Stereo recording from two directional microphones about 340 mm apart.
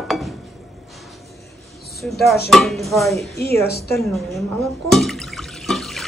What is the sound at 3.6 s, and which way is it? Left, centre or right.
Speech, left.